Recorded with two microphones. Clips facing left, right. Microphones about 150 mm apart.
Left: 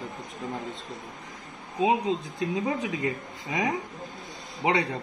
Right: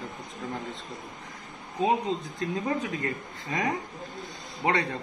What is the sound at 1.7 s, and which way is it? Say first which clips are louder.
A man's voice: left 2 dB; 15° left (ahead or behind).